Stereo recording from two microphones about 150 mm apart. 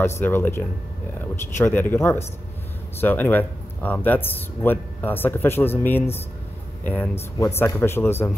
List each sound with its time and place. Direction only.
0.0 s speech: 15° left (ahead or behind)